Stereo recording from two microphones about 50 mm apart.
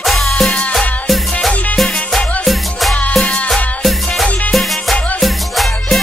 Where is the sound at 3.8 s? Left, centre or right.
Centre.